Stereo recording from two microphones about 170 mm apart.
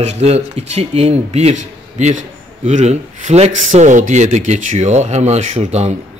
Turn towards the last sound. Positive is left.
turn(degrees=-40)  # may be behind; listen again after turning